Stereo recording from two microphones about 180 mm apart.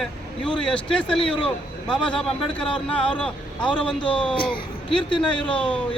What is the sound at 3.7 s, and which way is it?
Speech, 5° left (ahead or behind).